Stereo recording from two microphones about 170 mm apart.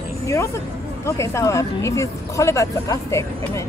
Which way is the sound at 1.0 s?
15° left (ahead or behind).